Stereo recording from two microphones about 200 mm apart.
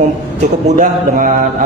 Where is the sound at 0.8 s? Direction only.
45° right (ahead or behind).